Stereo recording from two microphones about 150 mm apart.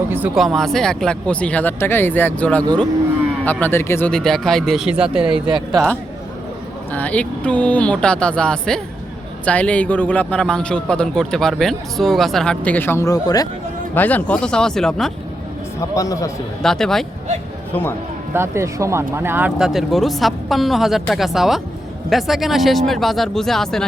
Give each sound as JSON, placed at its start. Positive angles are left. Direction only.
{"t": 0.3, "sound": "a man's voice", "side_deg": 0}
{"t": 4.1, "sound": "speech", "side_deg": 5}
{"t": 5.3, "sound": "speech", "side_deg": -30}
{"t": 6.9, "sound": "a man's voice", "side_deg": 10}
{"t": 13.9, "sound": "speech", "side_deg": 10}
{"t": 15.8, "sound": "a man's voice", "side_deg": 20}
{"t": 16.6, "sound": "speech", "side_deg": 5}
{"t": 18.3, "sound": "speech", "side_deg": -20}